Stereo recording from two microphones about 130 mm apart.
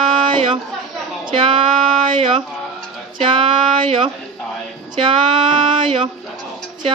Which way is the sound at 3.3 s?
40° right (ahead or behind).